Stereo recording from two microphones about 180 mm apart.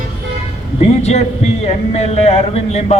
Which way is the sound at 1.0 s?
35° left (ahead or behind).